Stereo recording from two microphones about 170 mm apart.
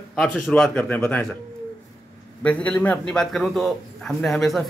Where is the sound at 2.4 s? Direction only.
5° left (ahead or behind).